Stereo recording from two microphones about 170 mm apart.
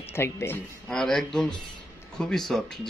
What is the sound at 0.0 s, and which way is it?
Speech, 15° left (ahead or behind).